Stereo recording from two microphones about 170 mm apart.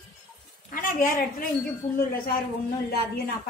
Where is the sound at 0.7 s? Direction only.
55° left (ahead or behind).